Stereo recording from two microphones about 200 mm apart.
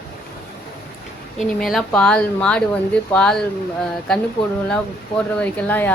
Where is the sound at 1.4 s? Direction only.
Centre (ahead or behind).